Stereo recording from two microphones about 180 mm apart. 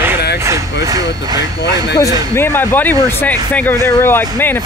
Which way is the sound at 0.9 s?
20° right (ahead or behind).